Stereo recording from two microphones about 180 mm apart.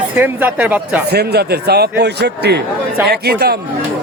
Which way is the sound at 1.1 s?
60° right (ahead or behind).